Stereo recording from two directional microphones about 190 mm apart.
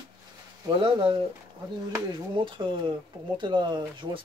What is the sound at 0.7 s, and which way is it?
Speech, 25° right (ahead or behind).